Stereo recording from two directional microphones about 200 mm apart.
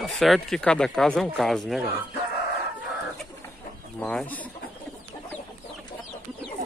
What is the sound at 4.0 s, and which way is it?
Speech, 5° left (ahead or behind).